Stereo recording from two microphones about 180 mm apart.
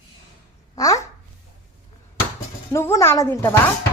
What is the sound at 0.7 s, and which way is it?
Speech, 20° left (ahead or behind).